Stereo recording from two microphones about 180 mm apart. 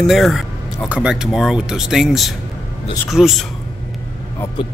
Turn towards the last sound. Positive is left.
turn(degrees=-5)  # may be behind; listen again after turning